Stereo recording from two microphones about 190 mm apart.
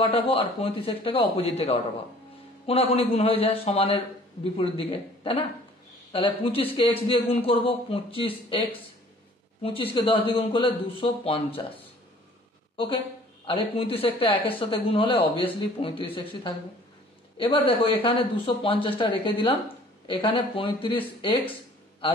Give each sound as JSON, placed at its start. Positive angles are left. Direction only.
{"t": 0.0, "sound": "a man's voice", "side_deg": 30}
{"t": 12.7, "sound": "a woman's voice", "side_deg": 30}